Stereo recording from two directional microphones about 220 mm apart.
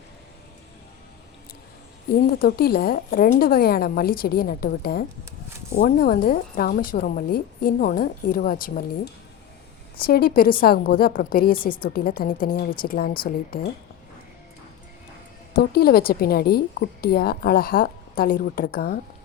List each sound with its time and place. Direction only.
2.2 s a woman's voice: 45° left (ahead or behind)
10.0 s a woman's voice: 45° left (ahead or behind)
15.5 s a woman's voice: 45° left (ahead or behind)